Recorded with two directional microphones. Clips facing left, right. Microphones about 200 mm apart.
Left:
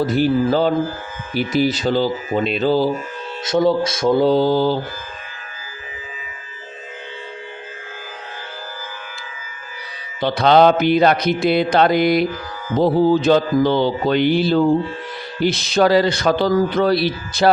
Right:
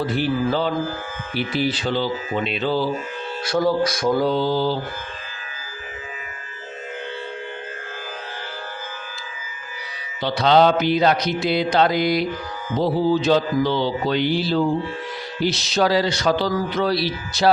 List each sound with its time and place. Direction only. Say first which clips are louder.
0.0 s speech: left 5 dB; 40° left (ahead or behind)
3.4 s speech: left 3 dB; 20° left (ahead or behind)
4.4 s speech: left 5 dB; 50° left (ahead or behind)
10.2 s mantra: left 3 dB; 55° left (ahead or behind)
12.7 s speech: left 5 dB; 50° left (ahead or behind)